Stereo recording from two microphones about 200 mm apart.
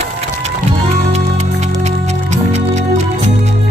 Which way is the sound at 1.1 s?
35° right (ahead or behind).